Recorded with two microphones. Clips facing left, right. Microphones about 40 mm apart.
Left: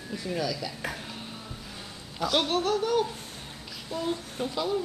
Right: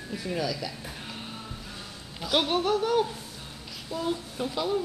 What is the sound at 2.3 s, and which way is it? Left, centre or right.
Speech, centre.